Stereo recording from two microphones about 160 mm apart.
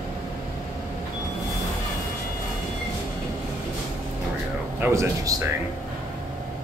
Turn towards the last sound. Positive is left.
turn(degrees=-20)  # may be behind; listen again after turning